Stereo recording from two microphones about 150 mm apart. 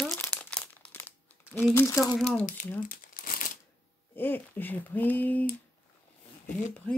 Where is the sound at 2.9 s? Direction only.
65° left (ahead or behind).